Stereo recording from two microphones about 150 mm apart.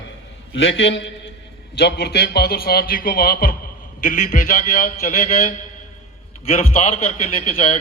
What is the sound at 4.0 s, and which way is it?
A man's voice, 60° left (ahead or behind).